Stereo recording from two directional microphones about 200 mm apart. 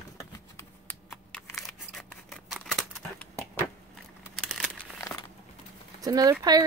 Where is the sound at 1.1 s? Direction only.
Centre (ahead or behind).